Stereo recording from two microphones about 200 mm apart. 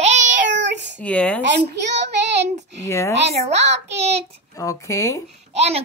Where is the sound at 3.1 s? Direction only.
30° right (ahead or behind).